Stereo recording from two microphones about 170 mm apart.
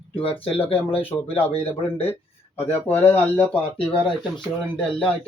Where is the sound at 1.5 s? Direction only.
35° left (ahead or behind).